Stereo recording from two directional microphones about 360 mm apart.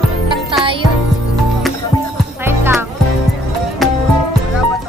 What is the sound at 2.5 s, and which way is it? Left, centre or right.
Music, centre.